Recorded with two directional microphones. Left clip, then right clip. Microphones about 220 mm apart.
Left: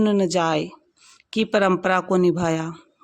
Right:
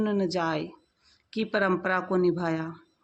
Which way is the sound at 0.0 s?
50° left (ahead or behind).